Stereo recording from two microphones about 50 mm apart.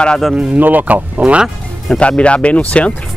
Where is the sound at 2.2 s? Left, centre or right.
Left.